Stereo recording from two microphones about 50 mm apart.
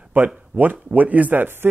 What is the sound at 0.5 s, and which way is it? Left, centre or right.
Speech, right.